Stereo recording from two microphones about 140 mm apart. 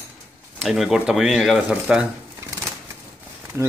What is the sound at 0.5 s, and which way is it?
Speech, centre (ahead or behind).